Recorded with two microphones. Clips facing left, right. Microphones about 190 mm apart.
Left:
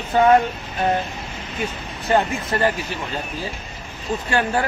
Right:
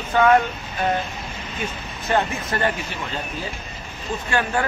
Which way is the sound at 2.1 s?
30° left (ahead or behind).